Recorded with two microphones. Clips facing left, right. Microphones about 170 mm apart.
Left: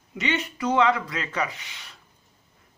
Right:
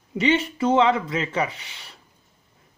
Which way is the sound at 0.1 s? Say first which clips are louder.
Right 7 dB; 30° right (ahead or behind).